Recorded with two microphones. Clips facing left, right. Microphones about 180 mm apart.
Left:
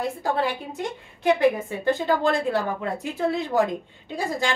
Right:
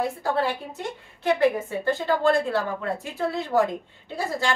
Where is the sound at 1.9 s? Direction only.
15° left (ahead or behind).